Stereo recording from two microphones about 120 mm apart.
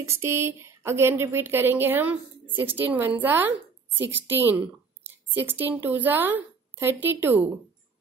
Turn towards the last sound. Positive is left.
turn(degrees=-15)  # may be behind; listen again after turning